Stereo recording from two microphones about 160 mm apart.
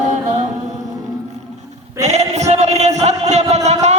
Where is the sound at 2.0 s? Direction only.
45° right (ahead or behind).